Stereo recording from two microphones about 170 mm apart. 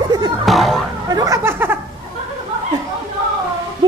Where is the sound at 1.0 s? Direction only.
20° right (ahead or behind).